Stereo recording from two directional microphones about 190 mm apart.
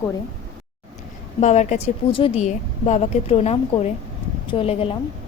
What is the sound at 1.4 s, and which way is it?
A woman's voice, 40° left (ahead or behind).